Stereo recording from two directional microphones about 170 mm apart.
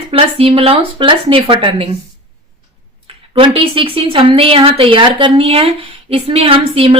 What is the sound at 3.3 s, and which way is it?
Speech, 35° right (ahead or behind).